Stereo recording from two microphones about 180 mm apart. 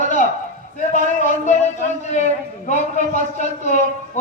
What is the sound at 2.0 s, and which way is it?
A man's voice, 40° left (ahead or behind).